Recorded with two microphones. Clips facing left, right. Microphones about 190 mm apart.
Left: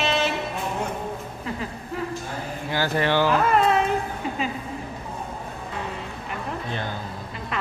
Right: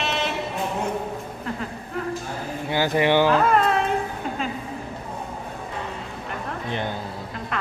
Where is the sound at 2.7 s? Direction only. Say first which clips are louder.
Right 3 dB; 15° right (ahead or behind).